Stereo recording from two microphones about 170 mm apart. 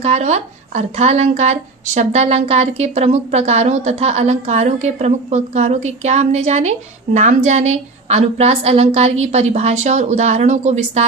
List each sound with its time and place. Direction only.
0.0 s a woman's voice: 40° right (ahead or behind)